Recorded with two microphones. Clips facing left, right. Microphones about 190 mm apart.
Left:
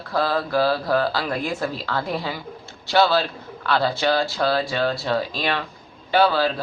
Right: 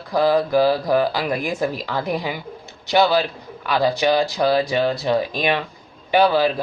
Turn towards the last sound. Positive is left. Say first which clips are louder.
# right 2 dB
turn(degrees=-15)  # may be behind; listen again after turning